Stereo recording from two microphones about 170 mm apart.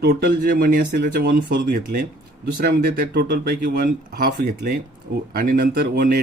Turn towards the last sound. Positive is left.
turn(degrees=-60)  # may be behind; listen again after turning